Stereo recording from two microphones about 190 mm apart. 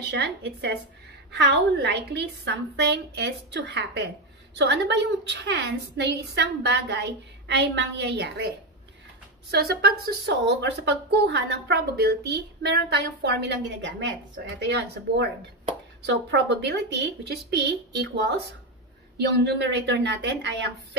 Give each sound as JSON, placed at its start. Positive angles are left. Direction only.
{"t": 0.1, "sound": "a woman's voice", "side_deg": -65}